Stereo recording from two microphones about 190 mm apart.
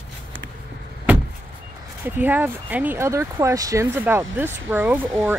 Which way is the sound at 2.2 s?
10° right (ahead or behind).